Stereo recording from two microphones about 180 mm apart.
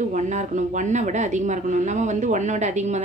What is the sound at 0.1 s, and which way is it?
A woman's voice, 40° right (ahead or behind).